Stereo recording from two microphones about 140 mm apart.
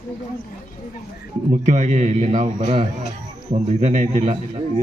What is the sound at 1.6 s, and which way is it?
A man's voice, 60° right (ahead or behind).